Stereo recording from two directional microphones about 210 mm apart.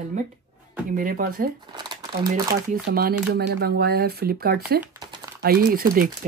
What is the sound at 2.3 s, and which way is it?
Speech, 40° right (ahead or behind).